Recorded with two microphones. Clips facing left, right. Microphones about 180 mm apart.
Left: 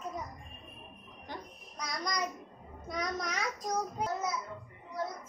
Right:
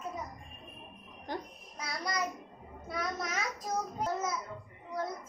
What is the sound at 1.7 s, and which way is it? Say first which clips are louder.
Child singing: even; 5° right (ahead or behind).